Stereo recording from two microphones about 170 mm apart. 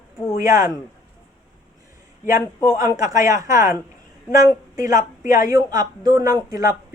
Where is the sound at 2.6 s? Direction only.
20° right (ahead or behind).